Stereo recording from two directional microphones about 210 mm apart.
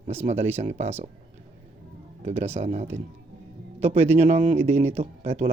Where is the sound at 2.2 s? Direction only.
30° right (ahead or behind).